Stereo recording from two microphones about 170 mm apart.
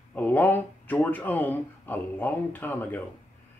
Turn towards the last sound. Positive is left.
turn(degrees=10)  # may be behind; listen again after turning